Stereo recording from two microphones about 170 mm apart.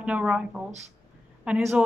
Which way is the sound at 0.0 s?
5° right (ahead or behind).